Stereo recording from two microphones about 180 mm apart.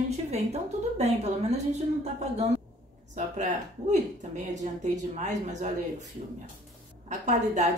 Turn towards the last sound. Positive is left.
turn(degrees=-40)  # may be behind; listen again after turning